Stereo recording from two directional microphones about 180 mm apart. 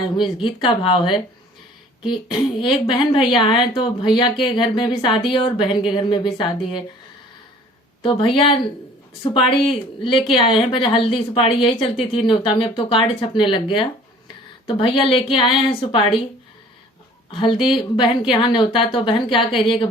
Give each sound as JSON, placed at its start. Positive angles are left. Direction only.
{"t": 0.4, "sound": "a woman's voice", "side_deg": 30}
{"t": 2.6, "sound": "a woman's voice", "side_deg": 25}
{"t": 8.0, "sound": "a woman's voice", "side_deg": 30}
{"t": 17.3, "sound": "a woman's voice", "side_deg": 25}